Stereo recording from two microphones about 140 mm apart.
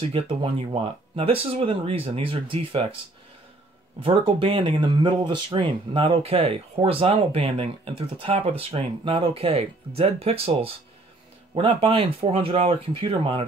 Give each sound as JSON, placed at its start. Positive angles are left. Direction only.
{"t": 0.1, "sound": "speech", "side_deg": -35}
{"t": 4.0, "sound": "speech", "side_deg": -40}